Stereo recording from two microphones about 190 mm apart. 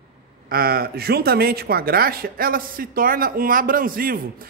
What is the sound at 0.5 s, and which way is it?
Speech, 50° right (ahead or behind).